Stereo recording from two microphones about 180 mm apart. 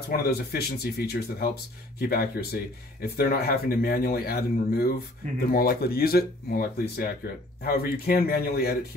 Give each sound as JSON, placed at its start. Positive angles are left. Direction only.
{"t": 0.1, "sound": "speech", "side_deg": 60}